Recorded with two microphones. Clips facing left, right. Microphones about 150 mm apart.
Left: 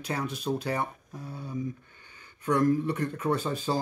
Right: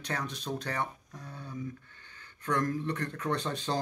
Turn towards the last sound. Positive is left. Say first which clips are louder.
# left 4 dB
turn(degrees=5)  # may be behind; listen again after turning